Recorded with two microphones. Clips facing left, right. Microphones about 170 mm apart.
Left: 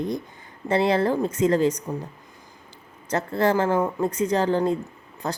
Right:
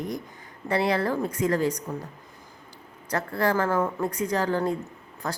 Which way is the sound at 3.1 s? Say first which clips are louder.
Left 3 dB; 25° left (ahead or behind).